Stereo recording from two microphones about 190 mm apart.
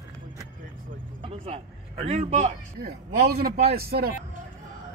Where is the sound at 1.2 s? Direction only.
30° right (ahead or behind).